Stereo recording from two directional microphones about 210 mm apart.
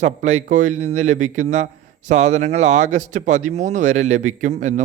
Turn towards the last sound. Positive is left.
turn(degrees=-35)  # may be behind; listen again after turning